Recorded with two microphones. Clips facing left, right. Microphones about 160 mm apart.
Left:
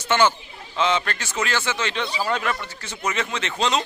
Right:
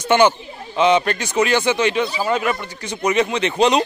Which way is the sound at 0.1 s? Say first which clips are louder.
Right 5 dB; 15° right (ahead or behind).